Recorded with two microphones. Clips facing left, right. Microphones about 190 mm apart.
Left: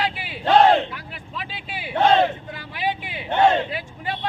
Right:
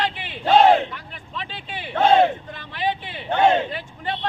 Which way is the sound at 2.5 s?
10° left (ahead or behind).